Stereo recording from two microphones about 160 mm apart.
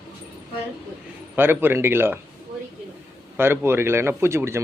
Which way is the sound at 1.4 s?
15° right (ahead or behind).